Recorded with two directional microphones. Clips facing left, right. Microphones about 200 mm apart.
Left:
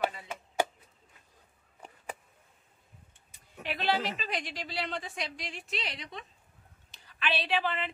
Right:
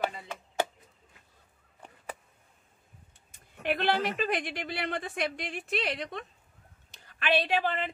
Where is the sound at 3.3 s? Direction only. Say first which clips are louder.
Right 7 dB; 55° right (ahead or behind).